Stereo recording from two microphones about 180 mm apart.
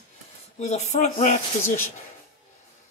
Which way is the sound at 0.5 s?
40° left (ahead or behind).